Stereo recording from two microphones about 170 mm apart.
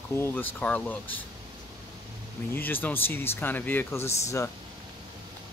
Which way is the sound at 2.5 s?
10° left (ahead or behind).